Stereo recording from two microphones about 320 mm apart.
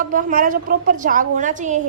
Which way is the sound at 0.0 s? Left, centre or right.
Right.